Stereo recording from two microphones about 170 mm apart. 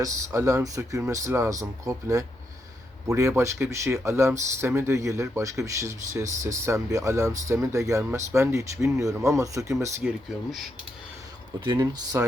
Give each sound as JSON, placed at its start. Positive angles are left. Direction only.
{"t": 0.0, "sound": "speech", "side_deg": -20}
{"t": 10.0, "sound": "speech", "side_deg": 0}
{"t": 11.6, "sound": "speech", "side_deg": -25}